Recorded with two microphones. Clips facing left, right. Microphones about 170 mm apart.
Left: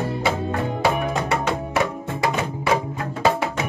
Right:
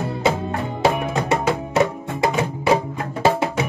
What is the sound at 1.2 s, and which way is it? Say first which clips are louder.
Music: right 3 dB; 25° right (ahead or behind).